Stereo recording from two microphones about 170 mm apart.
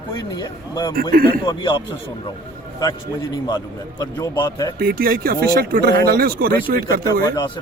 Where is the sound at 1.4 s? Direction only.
25° left (ahead or behind).